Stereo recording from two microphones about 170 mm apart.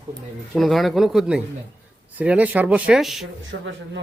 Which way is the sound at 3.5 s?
80° right.